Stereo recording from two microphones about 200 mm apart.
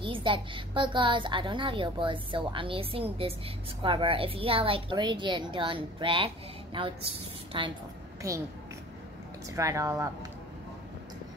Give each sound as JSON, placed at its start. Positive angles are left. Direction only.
{"t": 0.0, "sound": "a woman's voice", "side_deg": -25}
{"t": 9.6, "sound": "speech", "side_deg": -15}